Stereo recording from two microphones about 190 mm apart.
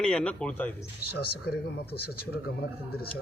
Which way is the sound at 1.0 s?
55° left (ahead or behind).